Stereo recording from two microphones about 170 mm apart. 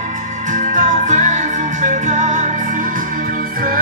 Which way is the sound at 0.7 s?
45° right (ahead or behind).